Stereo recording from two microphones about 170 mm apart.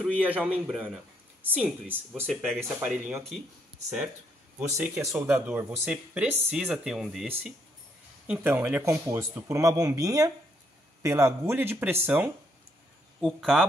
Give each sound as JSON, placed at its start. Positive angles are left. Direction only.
{"t": 0.0, "sound": "speech", "side_deg": -10}
{"t": 2.4, "sound": "speech", "side_deg": 0}
{"t": 4.6, "sound": "speech", "side_deg": -10}